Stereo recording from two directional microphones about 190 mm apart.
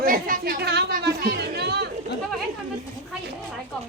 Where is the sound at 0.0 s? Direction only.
50° right (ahead or behind).